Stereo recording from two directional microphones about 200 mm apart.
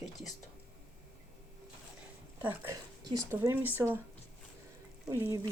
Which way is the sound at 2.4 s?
10° right (ahead or behind).